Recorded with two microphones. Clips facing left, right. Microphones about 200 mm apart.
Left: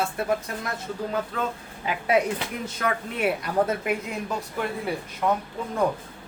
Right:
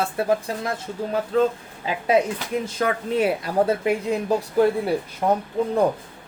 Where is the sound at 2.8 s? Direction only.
30° right (ahead or behind).